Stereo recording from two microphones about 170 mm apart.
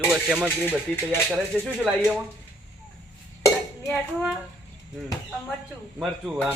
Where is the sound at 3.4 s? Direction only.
20° left (ahead or behind).